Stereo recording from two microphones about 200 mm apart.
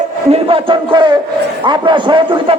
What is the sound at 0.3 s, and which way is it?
A man's voice, 25° right (ahead or behind).